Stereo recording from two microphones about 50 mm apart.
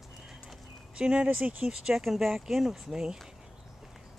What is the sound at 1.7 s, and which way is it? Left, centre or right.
Speech, centre.